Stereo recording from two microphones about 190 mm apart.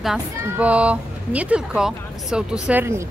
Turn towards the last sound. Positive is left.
turn(degrees=-10)  # may be behind; listen again after turning